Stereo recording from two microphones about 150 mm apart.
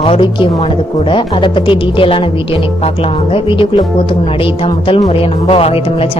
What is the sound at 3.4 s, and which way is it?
Speech, 35° left (ahead or behind).